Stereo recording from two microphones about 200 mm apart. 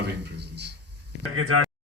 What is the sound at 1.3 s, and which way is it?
Speech, 90° right.